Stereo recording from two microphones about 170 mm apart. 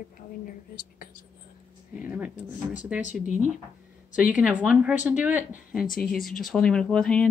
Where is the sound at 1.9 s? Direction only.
10° right (ahead or behind).